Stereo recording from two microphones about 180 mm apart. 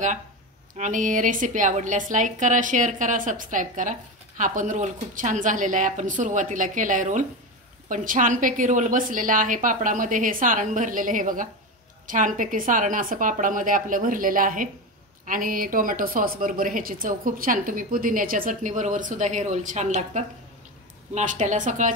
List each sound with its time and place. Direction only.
0.7 s a woman's voice: 45° right (ahead or behind)